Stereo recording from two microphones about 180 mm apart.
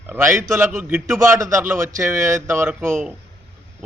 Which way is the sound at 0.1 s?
15° right (ahead or behind).